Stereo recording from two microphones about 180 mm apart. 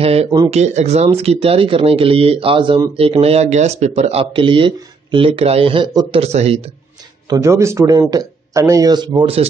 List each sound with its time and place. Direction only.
0.0 s speech: 35° right (ahead or behind)
7.2 s speech: 15° right (ahead or behind); by 9.5 s 30° right (ahead or behind)